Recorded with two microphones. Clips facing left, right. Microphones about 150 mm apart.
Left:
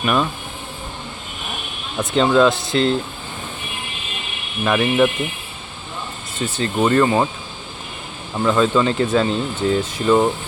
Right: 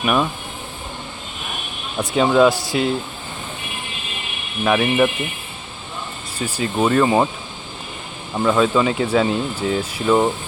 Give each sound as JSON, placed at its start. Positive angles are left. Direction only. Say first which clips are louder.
{"t": 0.0, "sound": "speech", "louder": "even", "side_deg": -5}
{"t": 2.0, "sound": "speech", "louder": "even", "side_deg": -10}
{"t": 4.6, "sound": "speech", "louder": "even", "side_deg": -5}
{"t": 6.4, "sound": "speech", "louder": "left 1 dB", "side_deg": -10}
{"t": 8.4, "sound": "speech", "louder": "even", "side_deg": -5}